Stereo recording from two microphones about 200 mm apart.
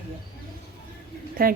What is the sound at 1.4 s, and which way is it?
Speech, 45° right (ahead or behind).